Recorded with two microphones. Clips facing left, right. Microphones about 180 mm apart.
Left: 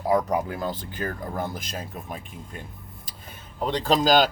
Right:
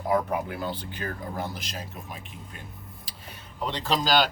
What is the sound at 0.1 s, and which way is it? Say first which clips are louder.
Speech: left 3 dB; 40° left (ahead or behind).